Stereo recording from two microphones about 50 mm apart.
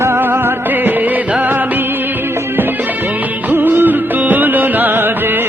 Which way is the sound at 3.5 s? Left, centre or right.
Right.